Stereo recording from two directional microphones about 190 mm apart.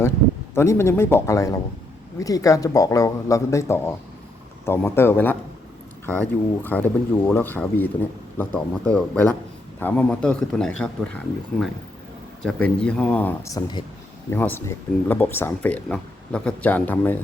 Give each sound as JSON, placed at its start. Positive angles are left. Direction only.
{"t": 0.5, "sound": "a man's voice", "side_deg": 15}
{"t": 12.4, "sound": "speech", "side_deg": 5}